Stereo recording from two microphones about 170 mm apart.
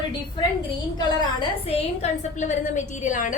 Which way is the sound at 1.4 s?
40° left (ahead or behind).